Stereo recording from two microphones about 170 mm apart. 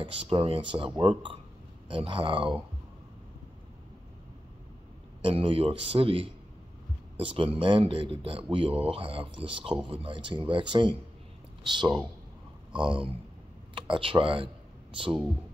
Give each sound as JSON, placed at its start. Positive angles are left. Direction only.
{"t": 0.0, "sound": "speech", "side_deg": -30}
{"t": 5.2, "sound": "speech", "side_deg": -35}